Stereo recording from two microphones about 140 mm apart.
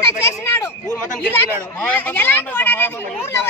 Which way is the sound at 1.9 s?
15° left (ahead or behind).